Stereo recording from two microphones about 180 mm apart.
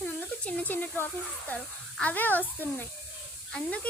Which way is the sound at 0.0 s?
5° left (ahead or behind).